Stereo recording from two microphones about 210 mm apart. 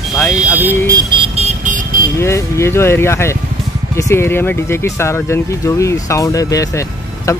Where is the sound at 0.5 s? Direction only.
15° right (ahead or behind); by 2.0 s 35° right (ahead or behind).